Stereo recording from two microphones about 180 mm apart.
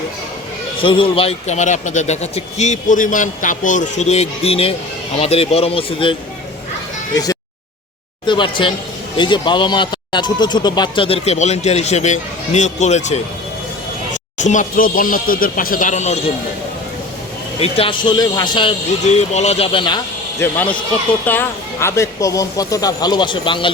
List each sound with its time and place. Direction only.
0.8 s speech: 30° left (ahead or behind)
8.3 s speech: 25° left (ahead or behind)
14.4 s speech: 45° left (ahead or behind)
17.6 s speech: 30° left (ahead or behind)
19.0 s speech: 40° left (ahead or behind)
20.4 s speech: 10° left (ahead or behind); by 23.7 s 30° left (ahead or behind)